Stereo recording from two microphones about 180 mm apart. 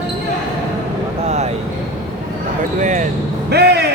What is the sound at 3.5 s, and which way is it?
Speech, 65° right (ahead or behind).